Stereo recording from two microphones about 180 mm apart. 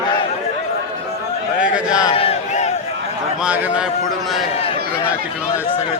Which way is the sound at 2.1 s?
35° left (ahead or behind).